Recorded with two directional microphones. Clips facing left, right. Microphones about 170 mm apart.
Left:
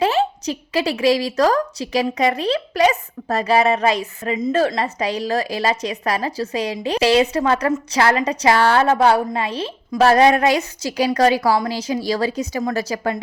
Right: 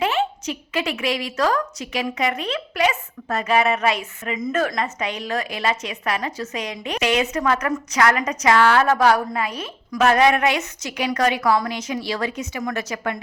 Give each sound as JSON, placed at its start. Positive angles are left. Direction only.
{"t": 0.0, "sound": "a woman's voice", "side_deg": 35}